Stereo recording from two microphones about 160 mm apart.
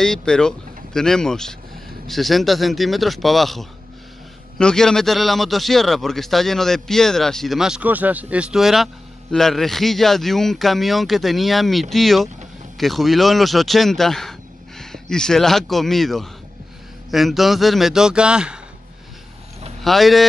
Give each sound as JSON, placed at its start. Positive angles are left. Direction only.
{"t": 0.0, "sound": "a man's voice", "side_deg": 5}
{"t": 19.8, "sound": "a man's voice", "side_deg": 0}